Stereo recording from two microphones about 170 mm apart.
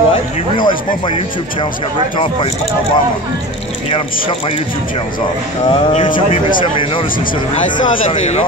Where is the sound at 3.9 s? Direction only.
30° left (ahead or behind).